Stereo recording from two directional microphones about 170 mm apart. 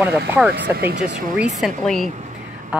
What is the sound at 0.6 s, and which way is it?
Speech, 80° right.